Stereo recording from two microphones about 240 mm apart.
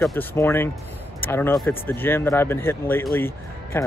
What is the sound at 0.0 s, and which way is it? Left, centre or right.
Speech, centre.